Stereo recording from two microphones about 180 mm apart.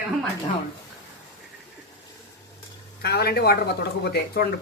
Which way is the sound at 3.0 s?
60° left (ahead or behind).